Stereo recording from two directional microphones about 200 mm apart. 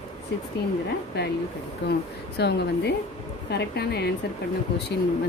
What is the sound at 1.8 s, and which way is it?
Speech, 60° left (ahead or behind).